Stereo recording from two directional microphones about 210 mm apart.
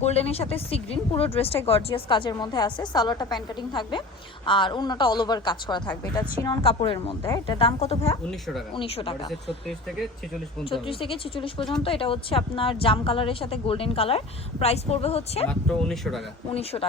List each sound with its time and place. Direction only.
0.0 s a woman's voice: 30° left (ahead or behind)
8.3 s speech: centre (ahead or behind)
8.7 s a woman's voice: 25° left (ahead or behind)
10.7 s a woman's voice: 25° left (ahead or behind)
15.4 s speech: centre (ahead or behind)